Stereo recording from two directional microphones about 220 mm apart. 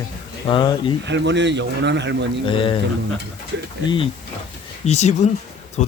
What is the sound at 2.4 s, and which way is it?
Speech, 25° left (ahead or behind).